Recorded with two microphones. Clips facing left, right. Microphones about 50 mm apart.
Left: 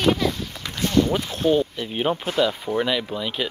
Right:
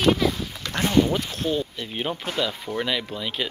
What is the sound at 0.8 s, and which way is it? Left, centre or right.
Speech, centre.